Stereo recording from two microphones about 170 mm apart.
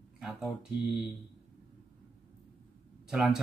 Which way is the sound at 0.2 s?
5° right (ahead or behind).